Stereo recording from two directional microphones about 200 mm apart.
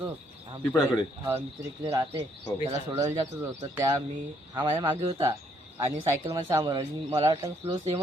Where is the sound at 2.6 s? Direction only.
25° right (ahead or behind).